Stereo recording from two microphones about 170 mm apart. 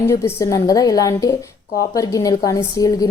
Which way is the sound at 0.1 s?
15° left (ahead or behind).